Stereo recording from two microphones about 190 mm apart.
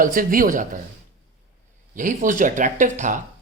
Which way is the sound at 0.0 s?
45° right (ahead or behind).